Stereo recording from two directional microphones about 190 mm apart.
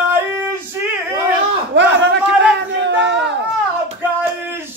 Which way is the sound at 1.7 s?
65° right (ahead or behind).